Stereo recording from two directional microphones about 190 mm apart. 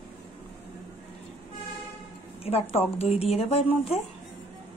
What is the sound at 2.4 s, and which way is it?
Speech, 30° left (ahead or behind).